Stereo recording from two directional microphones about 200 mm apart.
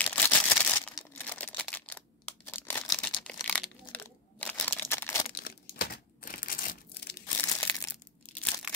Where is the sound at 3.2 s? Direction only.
5° left (ahead or behind).